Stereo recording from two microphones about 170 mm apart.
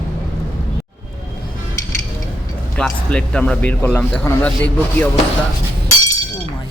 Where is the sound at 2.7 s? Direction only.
5° left (ahead or behind).